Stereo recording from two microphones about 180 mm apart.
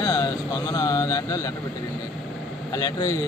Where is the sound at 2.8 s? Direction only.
20° left (ahead or behind).